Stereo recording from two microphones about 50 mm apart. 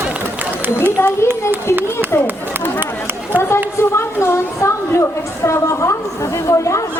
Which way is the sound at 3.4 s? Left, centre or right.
Left.